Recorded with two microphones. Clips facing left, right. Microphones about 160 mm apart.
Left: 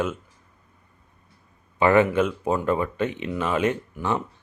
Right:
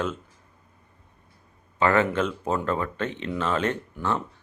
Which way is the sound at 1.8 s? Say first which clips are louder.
Left 4 dB; 15° left (ahead or behind).